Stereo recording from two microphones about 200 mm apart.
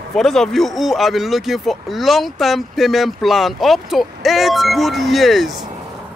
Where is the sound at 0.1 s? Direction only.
Centre (ahead or behind).